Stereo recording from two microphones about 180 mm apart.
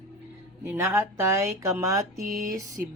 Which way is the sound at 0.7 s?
15° right (ahead or behind).